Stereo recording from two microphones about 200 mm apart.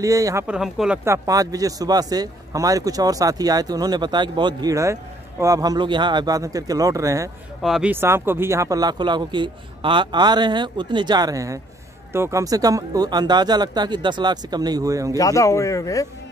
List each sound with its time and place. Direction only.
0.0 s speech: 15° right (ahead or behind)
0.5 s speech: 5° right (ahead or behind)
7.6 s speech: 5° right (ahead or behind)
15.1 s a man's voice: 15° left (ahead or behind)